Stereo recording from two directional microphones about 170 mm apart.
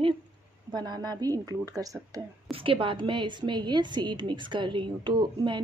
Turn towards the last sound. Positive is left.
turn(degrees=-25)  # may be behind; listen again after turning